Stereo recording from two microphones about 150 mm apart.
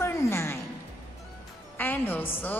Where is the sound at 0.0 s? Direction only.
15° left (ahead or behind).